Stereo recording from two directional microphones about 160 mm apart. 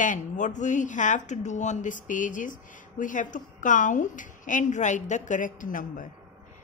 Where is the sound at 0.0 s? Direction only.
50° left (ahead or behind).